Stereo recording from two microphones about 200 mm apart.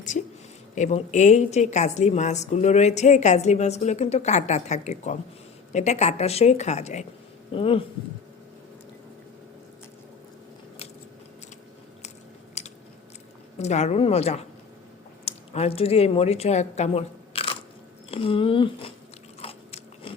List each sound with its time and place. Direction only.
0.8 s a woman's voice: 35° left (ahead or behind)
12.6 s chewing: 35° left (ahead or behind)
13.6 s a woman's voice: 35° left (ahead or behind)
19.4 s biting: 30° left (ahead or behind)